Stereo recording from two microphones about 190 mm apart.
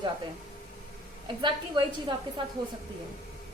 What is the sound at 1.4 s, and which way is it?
Speech, 25° right (ahead or behind).